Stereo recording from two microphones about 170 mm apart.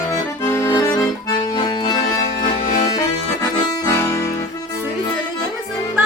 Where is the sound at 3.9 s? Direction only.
20° left (ahead or behind).